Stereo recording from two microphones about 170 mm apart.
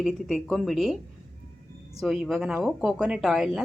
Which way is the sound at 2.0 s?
Centre (ahead or behind).